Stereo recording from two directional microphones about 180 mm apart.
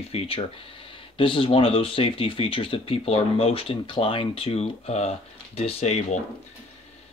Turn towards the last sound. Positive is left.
turn(degrees=35)  # may be behind; listen again after turning